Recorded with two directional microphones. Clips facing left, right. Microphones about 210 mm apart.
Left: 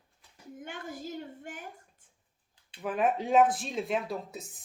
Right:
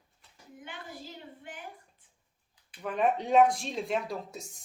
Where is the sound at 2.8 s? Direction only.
5° left (ahead or behind).